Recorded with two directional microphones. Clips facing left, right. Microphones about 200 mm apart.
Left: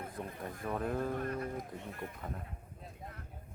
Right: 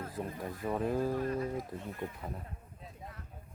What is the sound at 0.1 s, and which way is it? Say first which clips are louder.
Speech: right 3 dB; 5° right (ahead or behind).